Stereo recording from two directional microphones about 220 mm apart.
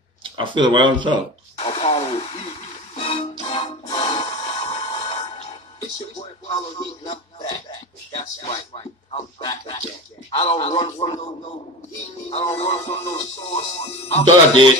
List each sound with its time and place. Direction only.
0.2 s speech: 20° right (ahead or behind)
1.6 s radio: 30° left (ahead or behind)
3.0 s music: 25° left (ahead or behind)
12.3 s music: 30° left (ahead or behind)